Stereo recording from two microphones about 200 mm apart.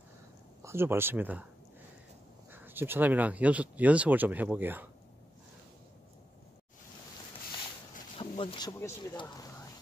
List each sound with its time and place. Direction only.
0.6 s speech: 15° right (ahead or behind)
2.5 s speech: 10° right (ahead or behind)
8.2 s speech: 25° left (ahead or behind)